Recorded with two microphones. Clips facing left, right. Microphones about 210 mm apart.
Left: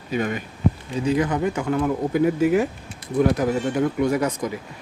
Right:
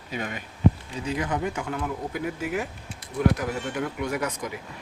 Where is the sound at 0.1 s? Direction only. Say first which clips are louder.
Left 8 dB; 50° left (ahead or behind).